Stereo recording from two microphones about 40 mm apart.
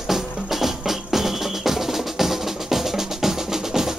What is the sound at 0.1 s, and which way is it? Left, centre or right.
Music, centre.